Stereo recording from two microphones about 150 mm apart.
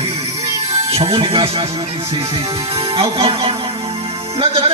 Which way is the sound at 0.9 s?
40° right (ahead or behind).